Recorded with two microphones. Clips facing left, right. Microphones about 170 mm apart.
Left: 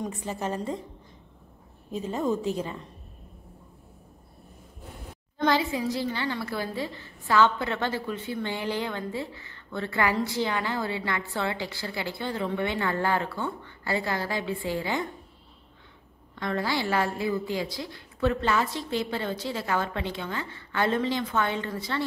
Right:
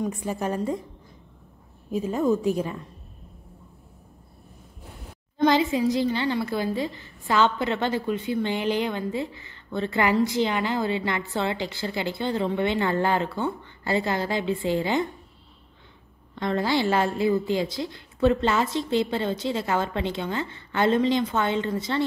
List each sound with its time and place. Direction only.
0.1 s a woman's voice: 10° right (ahead or behind)
1.9 s a woman's voice: 10° right (ahead or behind)
5.4 s a woman's voice: 20° right (ahead or behind)
16.3 s a woman's voice: 25° right (ahead or behind)